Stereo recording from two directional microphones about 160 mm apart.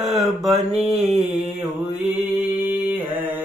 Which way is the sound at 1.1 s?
45° right (ahead or behind).